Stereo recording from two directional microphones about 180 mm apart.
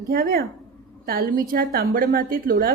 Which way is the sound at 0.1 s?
55° right (ahead or behind).